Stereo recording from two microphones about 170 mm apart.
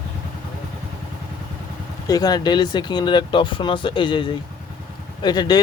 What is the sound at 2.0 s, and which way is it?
Speech, 20° left (ahead or behind).